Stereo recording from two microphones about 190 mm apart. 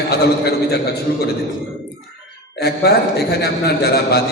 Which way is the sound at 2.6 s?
55° left (ahead or behind).